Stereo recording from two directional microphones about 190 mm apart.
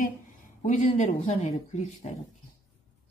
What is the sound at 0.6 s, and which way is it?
Speech, 40° left (ahead or behind).